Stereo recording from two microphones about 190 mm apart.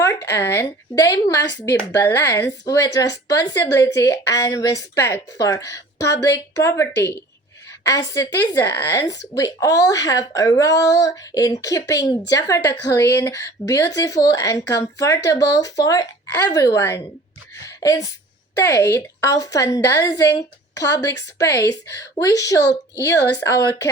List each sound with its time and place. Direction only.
0.0 s a woman's voice: 15° left (ahead or behind)
17.7 s a sound: 20° left (ahead or behind)
18.6 s speech: 15° left (ahead or behind)